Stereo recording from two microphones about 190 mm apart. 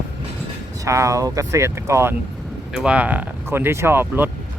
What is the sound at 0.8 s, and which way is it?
Speech, 15° right (ahead or behind).